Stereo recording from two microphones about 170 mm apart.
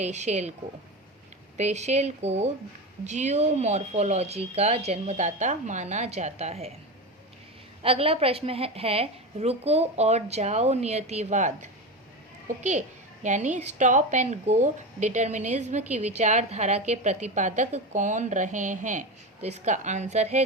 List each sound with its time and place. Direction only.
0.0 s a woman's voice: 40° right (ahead or behind)
1.5 s a woman's voice: 40° right (ahead or behind)
7.8 s a woman's voice: 35° right (ahead or behind)
13.2 s a woman's voice: 45° right (ahead or behind)